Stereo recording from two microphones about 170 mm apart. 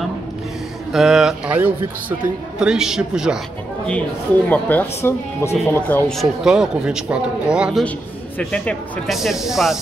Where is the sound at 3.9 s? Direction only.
10° left (ahead or behind).